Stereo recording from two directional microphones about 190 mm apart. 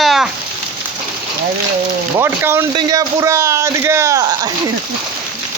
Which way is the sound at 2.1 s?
15° right (ahead or behind).